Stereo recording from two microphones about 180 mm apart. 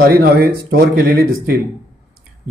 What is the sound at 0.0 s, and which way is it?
Speech, 55° right (ahead or behind).